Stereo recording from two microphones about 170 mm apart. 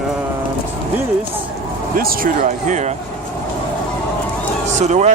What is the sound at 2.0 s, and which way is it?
Speech, 55° right (ahead or behind).